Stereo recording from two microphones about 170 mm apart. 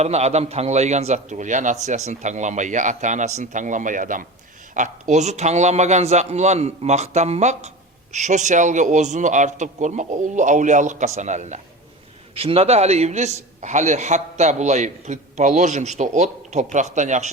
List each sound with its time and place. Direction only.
0.0 s a man's voice: 40° right (ahead or behind)